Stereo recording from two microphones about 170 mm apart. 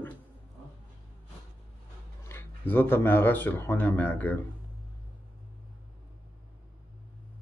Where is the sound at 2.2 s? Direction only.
15° left (ahead or behind).